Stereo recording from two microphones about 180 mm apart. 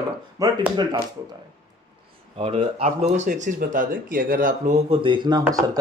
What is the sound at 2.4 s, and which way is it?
Speech, 35° right (ahead or behind).